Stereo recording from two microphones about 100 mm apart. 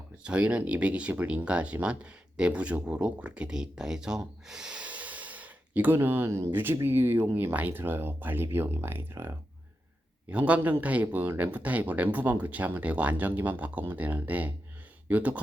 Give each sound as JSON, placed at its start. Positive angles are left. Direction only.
{"t": 0.2, "sound": "speech", "side_deg": -10}
{"t": 10.2, "sound": "speech", "side_deg": -15}